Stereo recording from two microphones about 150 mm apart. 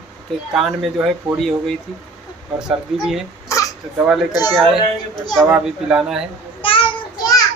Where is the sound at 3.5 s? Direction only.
20° left (ahead or behind).